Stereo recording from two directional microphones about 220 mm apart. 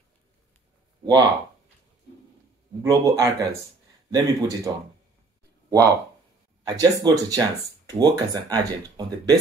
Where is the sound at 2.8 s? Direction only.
15° right (ahead or behind).